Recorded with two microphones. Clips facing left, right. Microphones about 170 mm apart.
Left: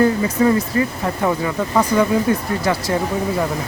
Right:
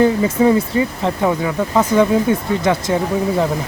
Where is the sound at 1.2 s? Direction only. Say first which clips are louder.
Right 1 dB; 10° right (ahead or behind).